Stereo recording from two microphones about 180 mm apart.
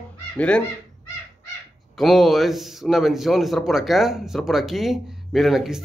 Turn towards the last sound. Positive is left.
turn(degrees=0)  # may be behind; listen again after turning